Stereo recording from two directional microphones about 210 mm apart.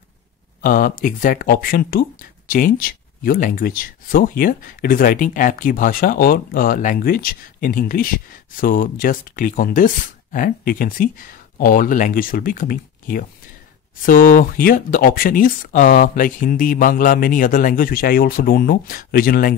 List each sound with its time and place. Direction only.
0.6 s speech: 40° left (ahead or behind)